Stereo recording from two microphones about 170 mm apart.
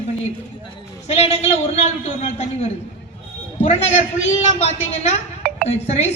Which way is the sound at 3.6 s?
40° left (ahead or behind).